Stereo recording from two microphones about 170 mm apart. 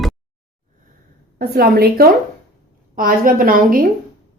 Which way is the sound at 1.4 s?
65° right (ahead or behind).